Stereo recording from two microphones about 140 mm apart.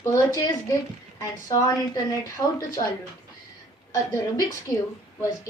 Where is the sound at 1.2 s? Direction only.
25° left (ahead or behind).